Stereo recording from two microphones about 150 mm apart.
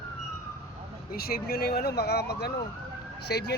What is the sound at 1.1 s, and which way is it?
Speech, 90° left.